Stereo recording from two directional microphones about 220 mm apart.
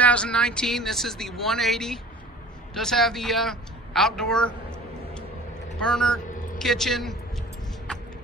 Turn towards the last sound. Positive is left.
turn(degrees=0)  # may be behind; listen again after turning